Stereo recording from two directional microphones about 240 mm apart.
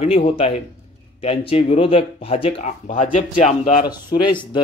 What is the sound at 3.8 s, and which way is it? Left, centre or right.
Speech, centre.